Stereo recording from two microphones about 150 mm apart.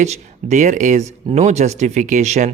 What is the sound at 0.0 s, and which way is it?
A man's voice, 50° right (ahead or behind).